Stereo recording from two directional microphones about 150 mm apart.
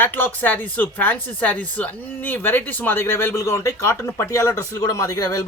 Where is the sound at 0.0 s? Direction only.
15° left (ahead or behind).